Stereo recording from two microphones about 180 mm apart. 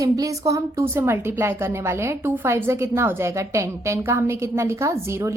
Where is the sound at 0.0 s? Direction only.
20° right (ahead or behind).